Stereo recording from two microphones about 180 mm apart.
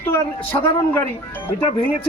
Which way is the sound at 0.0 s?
15° left (ahead or behind).